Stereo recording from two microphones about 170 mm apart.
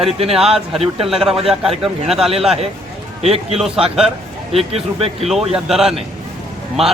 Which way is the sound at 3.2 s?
35° right (ahead or behind).